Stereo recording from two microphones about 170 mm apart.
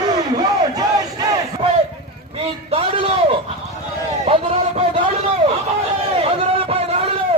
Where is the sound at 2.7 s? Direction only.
35° right (ahead or behind).